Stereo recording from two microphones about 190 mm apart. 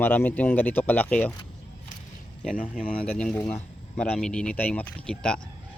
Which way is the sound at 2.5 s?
45° left (ahead or behind).